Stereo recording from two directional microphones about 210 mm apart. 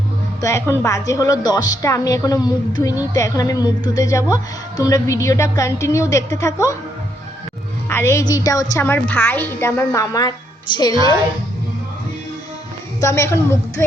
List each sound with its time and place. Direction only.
0.4 s a woman's voice: 15° left (ahead or behind)
7.9 s a woman's voice: 10° left (ahead or behind)
13.0 s a woman's voice: 15° left (ahead or behind)